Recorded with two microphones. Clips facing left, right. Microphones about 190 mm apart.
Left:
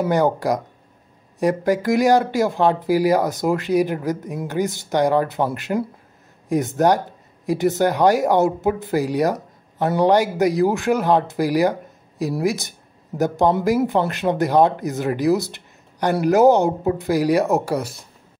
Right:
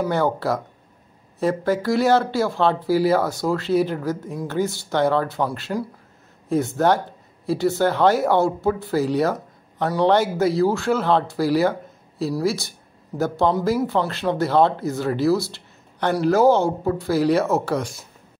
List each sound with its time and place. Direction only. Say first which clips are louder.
0.1 s speech: left 3 dB; 15° left (ahead or behind)